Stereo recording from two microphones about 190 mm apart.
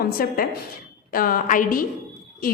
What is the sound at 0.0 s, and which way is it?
A woman's voice, 55° left (ahead or behind).